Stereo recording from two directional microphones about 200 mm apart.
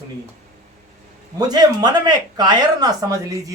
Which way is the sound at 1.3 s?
20° right (ahead or behind).